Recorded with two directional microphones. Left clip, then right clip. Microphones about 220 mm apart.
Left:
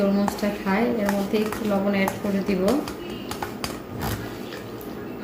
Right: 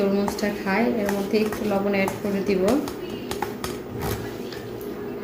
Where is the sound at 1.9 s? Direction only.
5° left (ahead or behind).